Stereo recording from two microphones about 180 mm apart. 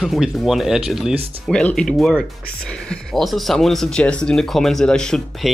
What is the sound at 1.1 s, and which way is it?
Speech, 35° right (ahead or behind).